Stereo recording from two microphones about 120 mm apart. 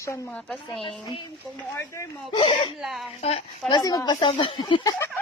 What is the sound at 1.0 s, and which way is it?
Speech, 40° left (ahead or behind).